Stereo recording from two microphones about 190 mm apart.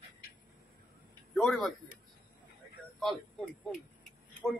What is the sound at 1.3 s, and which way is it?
Speech, 5° left (ahead or behind).